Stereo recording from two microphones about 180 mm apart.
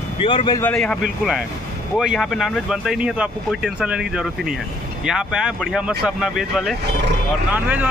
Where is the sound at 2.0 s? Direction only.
Centre (ahead or behind).